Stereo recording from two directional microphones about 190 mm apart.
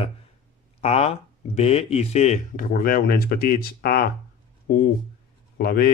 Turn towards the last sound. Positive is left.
turn(degrees=50)  # may be behind; listen again after turning